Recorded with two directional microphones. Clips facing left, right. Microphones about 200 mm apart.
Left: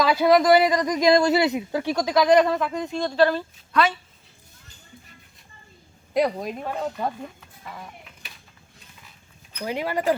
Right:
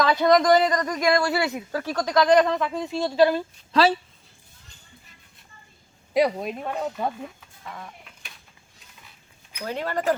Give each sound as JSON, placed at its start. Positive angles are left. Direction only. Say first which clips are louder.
{"t": 0.0, "sound": "a man's voice", "louder": "left 1 dB", "side_deg": 5}
{"t": 3.7, "sound": "speech", "louder": "right 2 dB", "side_deg": -30}
{"t": 6.1, "sound": "speech", "louder": "right 1 dB", "side_deg": 0}
{"t": 9.6, "sound": "a man's voice", "louder": "left 1 dB", "side_deg": 10}